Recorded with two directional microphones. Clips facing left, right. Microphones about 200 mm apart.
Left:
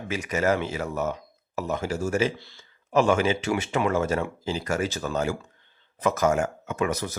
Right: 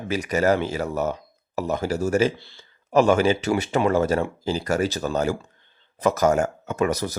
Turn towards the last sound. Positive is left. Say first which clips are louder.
# right 4 dB
turn(degrees=-40)  # may be behind; listen again after turning